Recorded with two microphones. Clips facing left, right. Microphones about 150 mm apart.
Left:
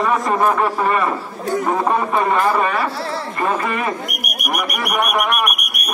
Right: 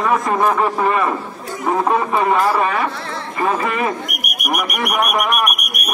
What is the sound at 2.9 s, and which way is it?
Speech, 35° left (ahead or behind).